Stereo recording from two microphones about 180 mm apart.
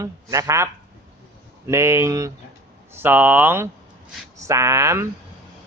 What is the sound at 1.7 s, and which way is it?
Speech, 15° right (ahead or behind).